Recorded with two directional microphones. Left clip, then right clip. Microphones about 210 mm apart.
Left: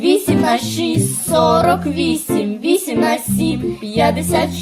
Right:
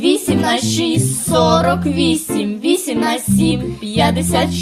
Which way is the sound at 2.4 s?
20° right (ahead or behind).